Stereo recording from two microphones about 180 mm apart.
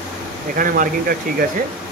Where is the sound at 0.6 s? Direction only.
50° right (ahead or behind).